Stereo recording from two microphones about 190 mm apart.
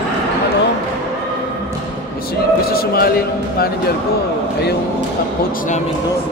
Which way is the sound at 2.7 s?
55° left (ahead or behind).